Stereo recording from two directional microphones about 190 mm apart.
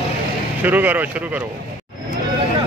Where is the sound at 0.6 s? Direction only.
10° right (ahead or behind).